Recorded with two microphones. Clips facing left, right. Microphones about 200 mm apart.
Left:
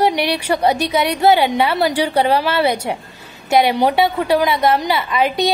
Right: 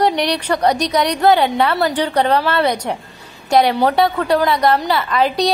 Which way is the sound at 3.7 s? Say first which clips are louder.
Even; 15° left (ahead or behind).